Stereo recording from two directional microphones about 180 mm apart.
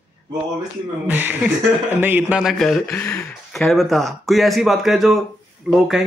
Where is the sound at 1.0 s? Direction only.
10° right (ahead or behind).